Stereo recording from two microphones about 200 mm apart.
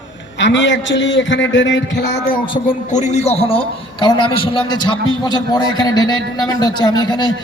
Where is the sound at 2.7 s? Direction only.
35° left (ahead or behind).